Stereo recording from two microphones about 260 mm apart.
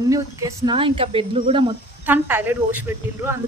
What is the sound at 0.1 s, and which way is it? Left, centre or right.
Speech, centre.